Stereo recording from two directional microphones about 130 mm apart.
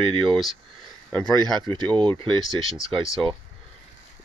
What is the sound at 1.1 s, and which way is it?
Speech, 10° left (ahead or behind).